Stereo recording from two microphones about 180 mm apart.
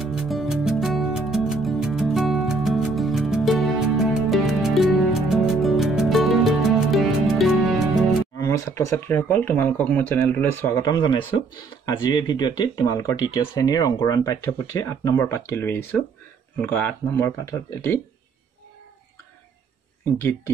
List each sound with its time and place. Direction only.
0.0 s music: 5° right (ahead or behind)
8.4 s a sound: 15° left (ahead or behind)
8.9 s speech: 10° left (ahead or behind)